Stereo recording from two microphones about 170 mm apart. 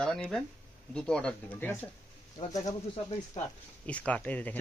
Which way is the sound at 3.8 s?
10° left (ahead or behind).